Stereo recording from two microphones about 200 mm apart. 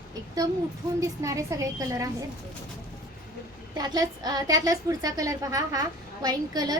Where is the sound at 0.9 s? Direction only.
15° right (ahead or behind).